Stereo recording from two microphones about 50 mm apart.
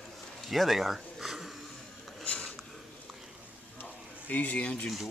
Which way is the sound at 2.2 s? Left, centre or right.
Left.